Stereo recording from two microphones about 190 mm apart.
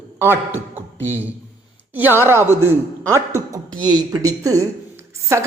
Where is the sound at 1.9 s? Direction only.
10° right (ahead or behind).